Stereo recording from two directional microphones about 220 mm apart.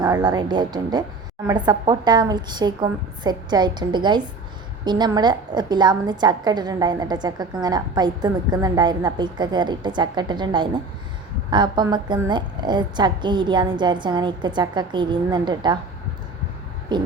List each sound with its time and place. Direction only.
0.0 s a woman's voice: 15° right (ahead or behind)
16.9 s a woman's voice: 20° right (ahead or behind)